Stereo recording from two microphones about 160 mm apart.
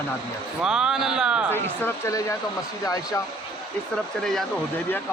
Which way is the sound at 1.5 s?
15° left (ahead or behind).